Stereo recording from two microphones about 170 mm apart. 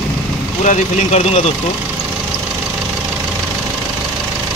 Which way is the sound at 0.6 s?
45° left (ahead or behind).